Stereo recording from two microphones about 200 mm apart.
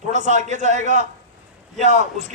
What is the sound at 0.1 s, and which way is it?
A man's voice, 35° right (ahead or behind).